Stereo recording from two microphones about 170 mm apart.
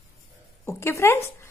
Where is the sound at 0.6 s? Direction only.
15° left (ahead or behind).